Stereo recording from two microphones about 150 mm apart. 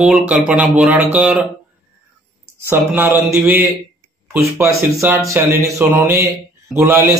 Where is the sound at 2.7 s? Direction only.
15° right (ahead or behind).